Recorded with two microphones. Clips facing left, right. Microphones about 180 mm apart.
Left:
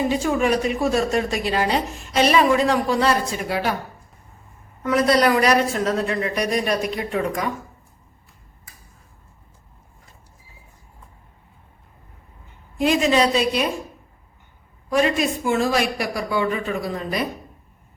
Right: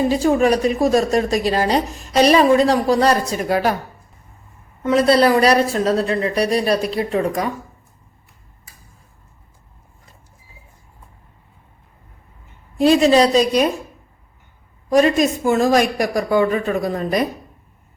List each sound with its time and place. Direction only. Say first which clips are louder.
0.1 s speech: right 5 dB; 35° right (ahead or behind)
4.8 s speech: right 4 dB; 25° right (ahead or behind)
12.8 s speech: right 5 dB; 35° right (ahead or behind)
14.8 s speech: right 5 dB; 40° right (ahead or behind)